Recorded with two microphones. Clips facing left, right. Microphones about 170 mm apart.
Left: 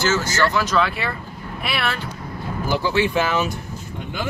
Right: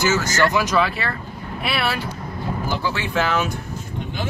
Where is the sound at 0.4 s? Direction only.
15° right (ahead or behind).